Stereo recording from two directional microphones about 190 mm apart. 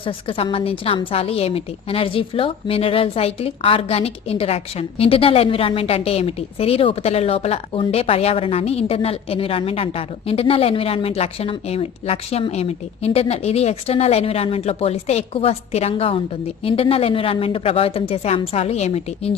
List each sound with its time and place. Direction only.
0.0 s a woman's voice: 30° left (ahead or behind)